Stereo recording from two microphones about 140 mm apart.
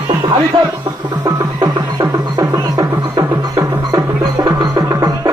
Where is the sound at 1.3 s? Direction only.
30° right (ahead or behind).